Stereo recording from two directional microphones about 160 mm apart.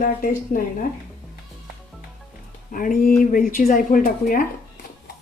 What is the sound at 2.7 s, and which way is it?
Speech, 60° left (ahead or behind).